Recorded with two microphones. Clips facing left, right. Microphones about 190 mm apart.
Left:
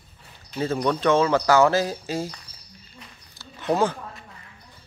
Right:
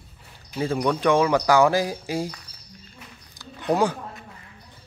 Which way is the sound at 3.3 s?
15° right (ahead or behind).